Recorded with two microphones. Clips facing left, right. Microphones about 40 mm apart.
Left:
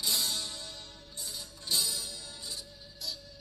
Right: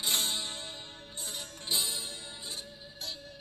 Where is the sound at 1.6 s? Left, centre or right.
Right.